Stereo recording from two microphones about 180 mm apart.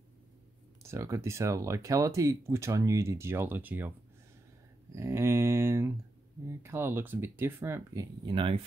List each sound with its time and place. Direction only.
0.8 s speech: 15° right (ahead or behind)
4.9 s speech: 15° right (ahead or behind)